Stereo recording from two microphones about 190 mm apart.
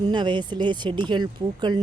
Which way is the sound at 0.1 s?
25° right (ahead or behind).